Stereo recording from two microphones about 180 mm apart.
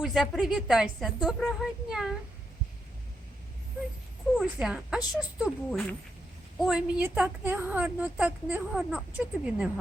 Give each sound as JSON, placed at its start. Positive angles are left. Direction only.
{"t": 0.0, "sound": "a woman's voice", "side_deg": 0}
{"t": 4.4, "sound": "a woman's voice", "side_deg": -5}